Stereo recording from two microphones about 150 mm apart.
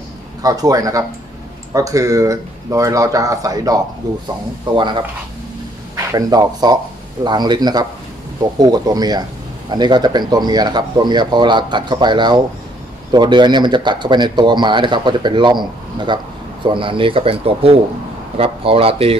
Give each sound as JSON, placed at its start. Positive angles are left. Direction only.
{"t": 0.4, "sound": "speech", "side_deg": -25}